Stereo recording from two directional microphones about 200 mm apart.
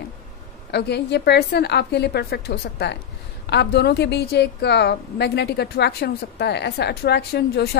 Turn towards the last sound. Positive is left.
turn(degrees=55)  # may be behind; listen again after turning